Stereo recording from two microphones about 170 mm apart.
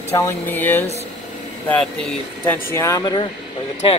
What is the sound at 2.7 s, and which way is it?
Speech, 20° left (ahead or behind).